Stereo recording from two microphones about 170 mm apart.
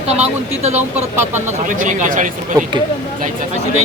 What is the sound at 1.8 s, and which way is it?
Speech, 50° right (ahead or behind).